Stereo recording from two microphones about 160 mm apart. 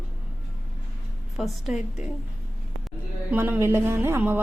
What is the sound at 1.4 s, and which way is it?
Speech, 5° right (ahead or behind).